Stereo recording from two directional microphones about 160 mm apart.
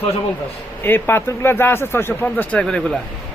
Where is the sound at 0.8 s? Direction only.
15° left (ahead or behind).